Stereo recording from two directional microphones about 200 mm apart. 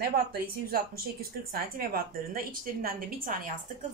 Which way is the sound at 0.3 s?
50° right (ahead or behind).